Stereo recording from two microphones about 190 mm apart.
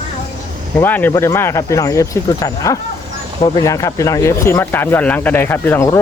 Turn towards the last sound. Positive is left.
turn(degrees=15)  # may be behind; listen again after turning